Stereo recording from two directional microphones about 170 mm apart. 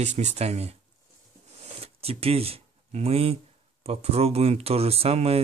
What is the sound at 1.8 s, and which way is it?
Speech, 35° right (ahead or behind).